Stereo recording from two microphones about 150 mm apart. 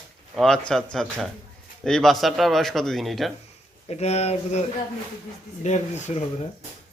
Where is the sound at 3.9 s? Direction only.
45° left (ahead or behind).